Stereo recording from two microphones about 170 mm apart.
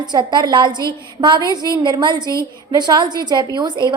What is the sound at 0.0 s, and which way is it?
A woman's voice, 25° right (ahead or behind).